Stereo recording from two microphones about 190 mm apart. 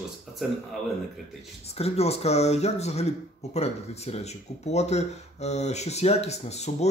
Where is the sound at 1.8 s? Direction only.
35° left (ahead or behind).